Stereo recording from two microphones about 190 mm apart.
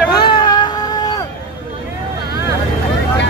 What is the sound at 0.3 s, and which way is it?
Music, 25° left (ahead or behind).